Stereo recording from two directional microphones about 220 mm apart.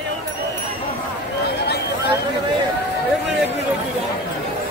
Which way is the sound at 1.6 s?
50° left (ahead or behind).